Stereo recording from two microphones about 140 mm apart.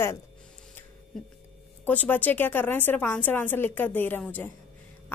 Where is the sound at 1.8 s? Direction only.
15° left (ahead or behind).